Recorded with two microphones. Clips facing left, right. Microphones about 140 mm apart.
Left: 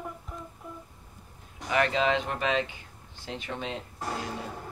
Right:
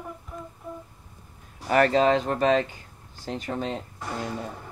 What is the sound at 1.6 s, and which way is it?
Speech, 40° right (ahead or behind).